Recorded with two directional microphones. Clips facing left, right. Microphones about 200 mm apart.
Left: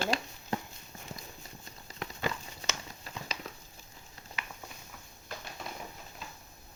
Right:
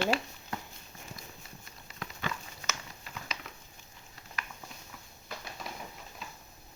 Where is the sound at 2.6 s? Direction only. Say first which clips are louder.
Left 1 dB; 30° left (ahead or behind).